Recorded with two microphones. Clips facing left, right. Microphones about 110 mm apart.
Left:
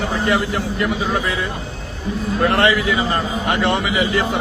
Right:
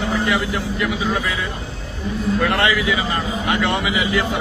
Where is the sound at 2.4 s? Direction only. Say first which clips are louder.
Left 4 dB; 40° left (ahead or behind).